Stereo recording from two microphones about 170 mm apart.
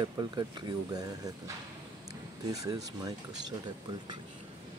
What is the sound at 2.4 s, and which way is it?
Speech, 20° right (ahead or behind).